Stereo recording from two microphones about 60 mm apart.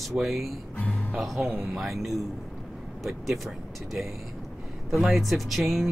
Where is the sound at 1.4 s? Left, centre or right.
Right.